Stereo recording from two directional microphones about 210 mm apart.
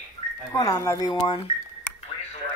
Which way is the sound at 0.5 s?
15° left (ahead or behind).